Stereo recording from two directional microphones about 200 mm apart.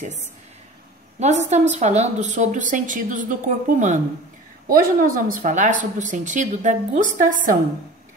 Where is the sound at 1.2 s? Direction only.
35° right (ahead or behind).